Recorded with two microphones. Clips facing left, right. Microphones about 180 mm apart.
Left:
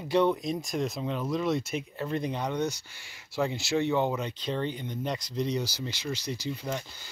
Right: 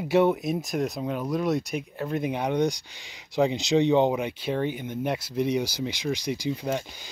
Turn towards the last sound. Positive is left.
turn(degrees=-15)  # may be behind; listen again after turning